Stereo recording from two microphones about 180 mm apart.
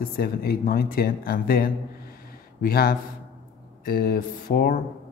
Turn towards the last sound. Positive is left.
turn(degrees=50)  # may be behind; listen again after turning